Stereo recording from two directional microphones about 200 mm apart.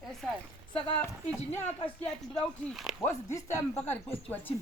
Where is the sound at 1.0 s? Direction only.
10° left (ahead or behind).